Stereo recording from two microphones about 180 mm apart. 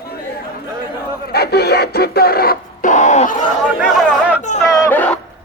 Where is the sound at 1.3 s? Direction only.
60° left (ahead or behind); by 3.3 s 40° left (ahead or behind).